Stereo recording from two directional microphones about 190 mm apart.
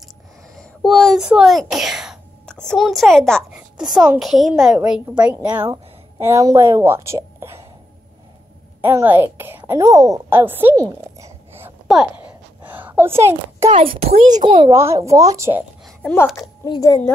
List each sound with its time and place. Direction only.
0.6 s a sound: centre (ahead or behind)
3.8 s a woman's voice: 20° right (ahead or behind)
4.2 s a woman's voice: centre (ahead or behind)
8.8 s a woman's voice: 10° right (ahead or behind)
12.3 s a sound: 10° right (ahead or behind)
13.7 s a child's voice: 30° right (ahead or behind)
14.7 s speech: 15° right (ahead or behind)
16.0 s speech: 5° left (ahead or behind)
16.6 s speech: 20° left (ahead or behind)